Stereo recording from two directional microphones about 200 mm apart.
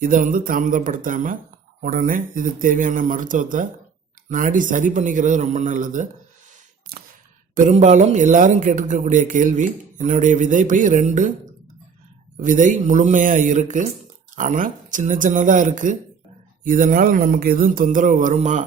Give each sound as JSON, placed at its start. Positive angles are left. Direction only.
{"t": 0.0, "sound": "speech", "side_deg": -40}
{"t": 6.9, "sound": "a sound", "side_deg": -50}
{"t": 7.5, "sound": "speech", "side_deg": -40}
{"t": 12.4, "sound": "speech", "side_deg": -40}